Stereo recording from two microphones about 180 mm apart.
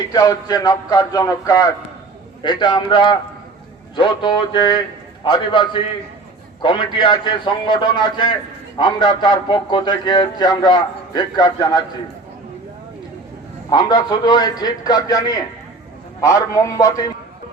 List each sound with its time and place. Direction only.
0.1 s a man's voice: 20° left (ahead or behind)
13.7 s a man's voice: 25° left (ahead or behind)